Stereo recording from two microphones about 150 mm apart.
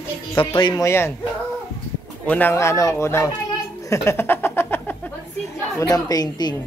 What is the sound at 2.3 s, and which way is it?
Speech, 10° left (ahead or behind).